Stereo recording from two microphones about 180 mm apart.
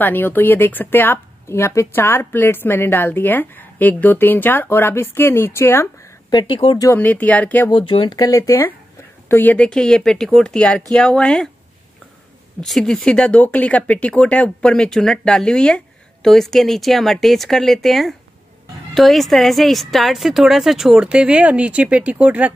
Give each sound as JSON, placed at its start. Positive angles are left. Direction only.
{"t": 0.0, "sound": "speech", "side_deg": 10}
{"t": 6.5, "sound": "speech", "side_deg": 30}
{"t": 6.9, "sound": "speech", "side_deg": 10}
{"t": 7.7, "sound": "speech", "side_deg": 30}
{"t": 12.5, "sound": "speech", "side_deg": 0}